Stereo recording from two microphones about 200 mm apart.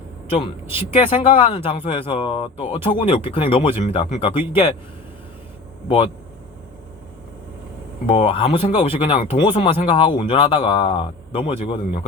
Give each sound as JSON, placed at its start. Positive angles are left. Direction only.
{"t": 0.8, "sound": "speech", "side_deg": 25}
{"t": 8.0, "sound": "speech", "side_deg": 30}